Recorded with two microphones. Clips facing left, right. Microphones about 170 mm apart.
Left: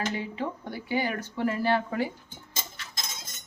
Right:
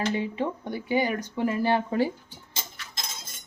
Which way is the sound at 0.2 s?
20° right (ahead or behind).